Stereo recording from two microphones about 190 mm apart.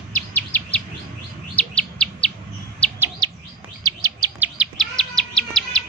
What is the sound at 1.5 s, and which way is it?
Bird, 5° left (ahead or behind).